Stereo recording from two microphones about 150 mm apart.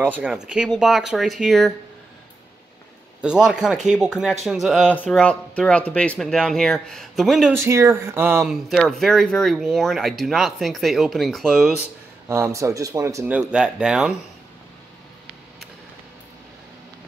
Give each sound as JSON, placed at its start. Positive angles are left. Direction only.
{"t": 0.1, "sound": "speech", "side_deg": -10}
{"t": 3.2, "sound": "speech", "side_deg": -5}
{"t": 7.5, "sound": "speech", "side_deg": -20}
{"t": 12.3, "sound": "speech", "side_deg": -20}
{"t": 13.3, "sound": "speech", "side_deg": -5}